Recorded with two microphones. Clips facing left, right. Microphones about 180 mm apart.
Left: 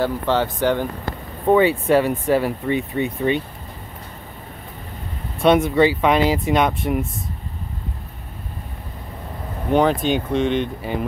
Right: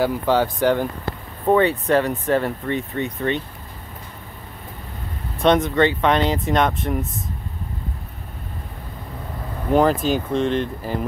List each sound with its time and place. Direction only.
0.0 s speech: 10° right (ahead or behind)
1.5 s speech: 5° left (ahead or behind)
2.9 s speech: 15° left (ahead or behind)
5.4 s speech: 5° left (ahead or behind)
9.7 s speech: centre (ahead or behind)